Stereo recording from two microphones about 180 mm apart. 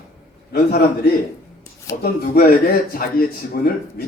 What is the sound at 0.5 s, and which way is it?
Speech, 60° left (ahead or behind).